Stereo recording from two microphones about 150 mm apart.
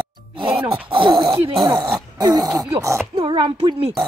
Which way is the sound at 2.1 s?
25° right (ahead or behind).